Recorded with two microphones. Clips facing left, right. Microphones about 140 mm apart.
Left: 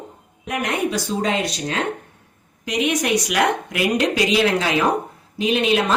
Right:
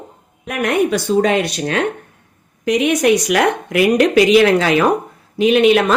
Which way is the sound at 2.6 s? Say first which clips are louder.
Right 7 dB; 55° right (ahead or behind).